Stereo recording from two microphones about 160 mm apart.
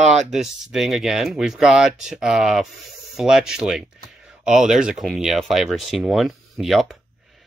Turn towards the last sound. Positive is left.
turn(degrees=0)  # may be behind; listen again after turning